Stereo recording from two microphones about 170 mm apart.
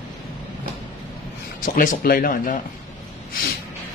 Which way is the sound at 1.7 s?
50° left (ahead or behind).